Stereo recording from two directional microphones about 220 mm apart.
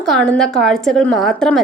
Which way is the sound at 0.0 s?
5° left (ahead or behind).